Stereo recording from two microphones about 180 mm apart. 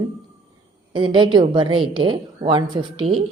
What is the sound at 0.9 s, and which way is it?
A woman's voice, 25° right (ahead or behind).